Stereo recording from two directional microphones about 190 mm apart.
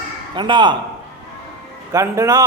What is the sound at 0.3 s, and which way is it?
Speech, 25° right (ahead or behind).